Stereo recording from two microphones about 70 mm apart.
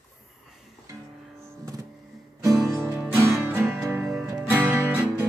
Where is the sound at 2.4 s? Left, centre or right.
Right.